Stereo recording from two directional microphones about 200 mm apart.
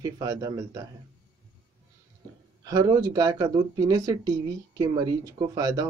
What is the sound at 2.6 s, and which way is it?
Speech, 20° right (ahead or behind).